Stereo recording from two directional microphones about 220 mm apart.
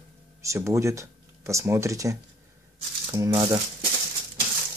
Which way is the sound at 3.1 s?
15° right (ahead or behind).